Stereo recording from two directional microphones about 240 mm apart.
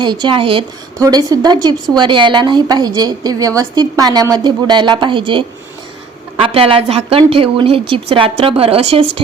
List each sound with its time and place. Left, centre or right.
0.0 s a woman's voice: centre